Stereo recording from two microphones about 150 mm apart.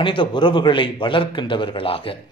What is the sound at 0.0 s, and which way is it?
A man's voice, 35° left (ahead or behind).